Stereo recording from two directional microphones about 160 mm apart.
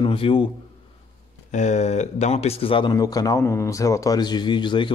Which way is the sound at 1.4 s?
45° left (ahead or behind).